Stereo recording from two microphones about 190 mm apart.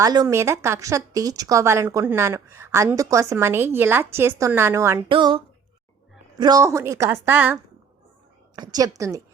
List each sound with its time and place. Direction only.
0.0 s a woman's voice: 20° right (ahead or behind)
5.0 s a woman's voice: 25° right (ahead or behind); by 7.6 s 10° right (ahead or behind)
8.5 s a woman's voice: 20° right (ahead or behind)